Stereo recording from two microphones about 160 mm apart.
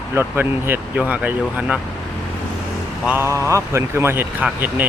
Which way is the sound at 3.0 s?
15° right (ahead or behind).